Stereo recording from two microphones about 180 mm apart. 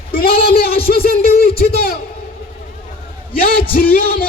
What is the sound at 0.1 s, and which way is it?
Speech, 55° left (ahead or behind).